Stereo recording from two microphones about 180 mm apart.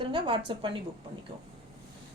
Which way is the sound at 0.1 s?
25° right (ahead or behind).